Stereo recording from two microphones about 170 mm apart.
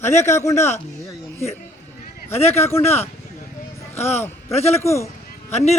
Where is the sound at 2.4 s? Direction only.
40° left (ahead or behind).